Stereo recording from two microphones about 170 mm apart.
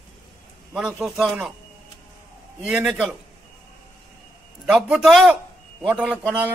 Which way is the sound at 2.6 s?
5° right (ahead or behind).